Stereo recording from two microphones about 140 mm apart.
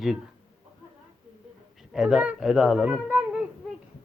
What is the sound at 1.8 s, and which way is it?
Speech, centre (ahead or behind).